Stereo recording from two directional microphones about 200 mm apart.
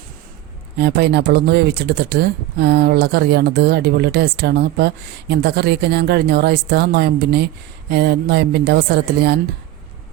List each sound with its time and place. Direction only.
0.8 s speech: 55° right (ahead or behind)